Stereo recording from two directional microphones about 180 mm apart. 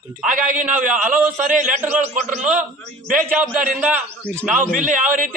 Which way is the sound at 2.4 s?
10° right (ahead or behind).